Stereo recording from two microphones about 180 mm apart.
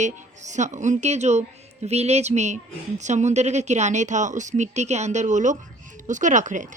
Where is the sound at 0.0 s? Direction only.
40° right (ahead or behind).